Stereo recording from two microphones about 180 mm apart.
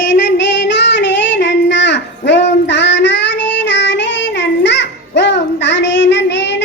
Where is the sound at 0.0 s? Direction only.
70° left (ahead or behind).